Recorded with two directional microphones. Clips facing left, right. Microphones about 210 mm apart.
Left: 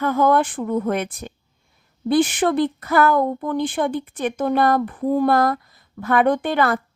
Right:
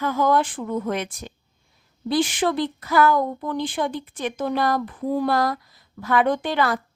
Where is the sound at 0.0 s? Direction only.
55° left (ahead or behind).